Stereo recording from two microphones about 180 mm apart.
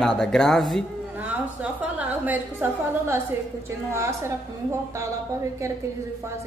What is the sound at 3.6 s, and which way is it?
Speech, 15° right (ahead or behind).